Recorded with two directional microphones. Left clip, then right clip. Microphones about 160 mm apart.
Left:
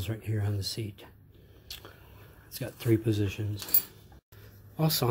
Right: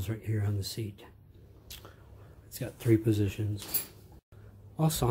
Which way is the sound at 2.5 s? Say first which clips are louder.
Right 1 dB; 5° right (ahead or behind).